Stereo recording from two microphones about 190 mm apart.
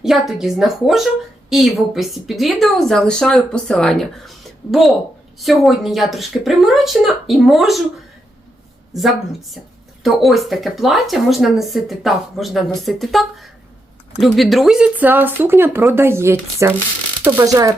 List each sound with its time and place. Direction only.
0.0 s speech: centre (ahead or behind)
10.0 s speech: centre (ahead or behind); by 17.7 s 20° right (ahead or behind)